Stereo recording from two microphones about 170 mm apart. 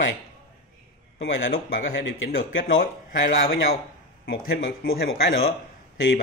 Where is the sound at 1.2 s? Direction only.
90° left.